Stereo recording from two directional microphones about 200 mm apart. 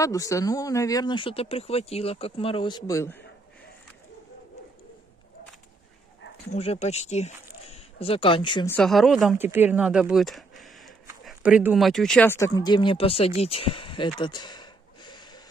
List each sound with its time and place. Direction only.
0.0 s speech: 15° left (ahead or behind)
6.5 s speech: 35° left (ahead or behind)
8.6 s speech: 5° left (ahead or behind)
12.5 s speech: 20° left (ahead or behind)